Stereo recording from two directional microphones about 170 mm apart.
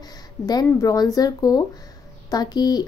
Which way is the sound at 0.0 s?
25° left (ahead or behind).